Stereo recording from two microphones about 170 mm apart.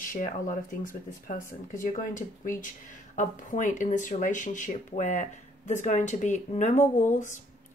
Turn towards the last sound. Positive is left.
turn(degrees=45)  # may be behind; listen again after turning